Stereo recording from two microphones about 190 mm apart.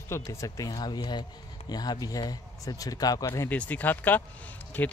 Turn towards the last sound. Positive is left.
turn(degrees=10)  # may be behind; listen again after turning